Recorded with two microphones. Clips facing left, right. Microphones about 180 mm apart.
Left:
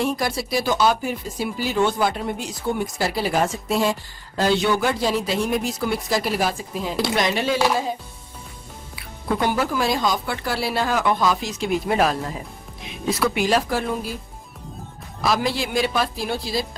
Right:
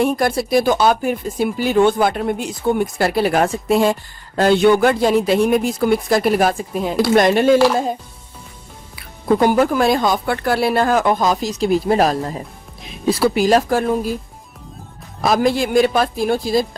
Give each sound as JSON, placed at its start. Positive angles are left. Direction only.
{"t": 0.0, "sound": "speech", "side_deg": -55}
{"t": 9.0, "sound": "speech", "side_deg": -45}
{"t": 15.2, "sound": "speech", "side_deg": -50}